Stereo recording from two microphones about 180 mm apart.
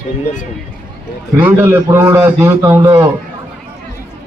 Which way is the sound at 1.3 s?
15° right (ahead or behind).